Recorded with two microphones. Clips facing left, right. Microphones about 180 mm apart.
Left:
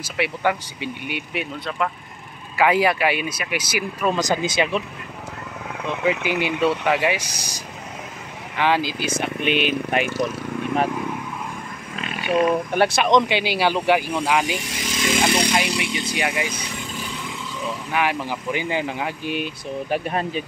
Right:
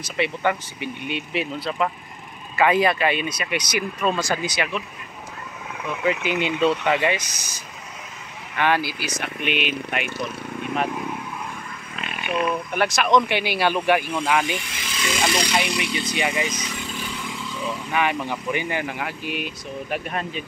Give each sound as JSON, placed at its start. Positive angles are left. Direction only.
{"t": 0.2, "sound": "speech", "side_deg": 5}
{"t": 2.5, "sound": "speech", "side_deg": 10}
{"t": 4.1, "sound": "speech", "side_deg": 20}
{"t": 6.0, "sound": "speech", "side_deg": 10}
{"t": 7.2, "sound": "speech", "side_deg": 35}
{"t": 8.5, "sound": "speech", "side_deg": 15}
{"t": 9.0, "sound": "speech", "side_deg": 30}
{"t": 12.3, "sound": "speech", "side_deg": 35}
{"t": 13.1, "sound": "speech", "side_deg": 15}
{"t": 16.1, "sound": "speech", "side_deg": 5}
{"t": 17.9, "sound": "speech", "side_deg": 5}